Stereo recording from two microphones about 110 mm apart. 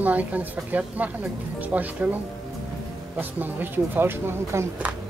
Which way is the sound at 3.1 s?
15° right (ahead or behind).